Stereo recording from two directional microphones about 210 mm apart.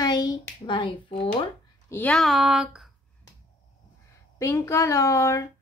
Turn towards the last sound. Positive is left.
turn(degrees=15)  # may be behind; listen again after turning